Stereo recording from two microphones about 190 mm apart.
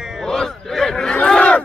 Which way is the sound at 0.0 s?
Centre (ahead or behind).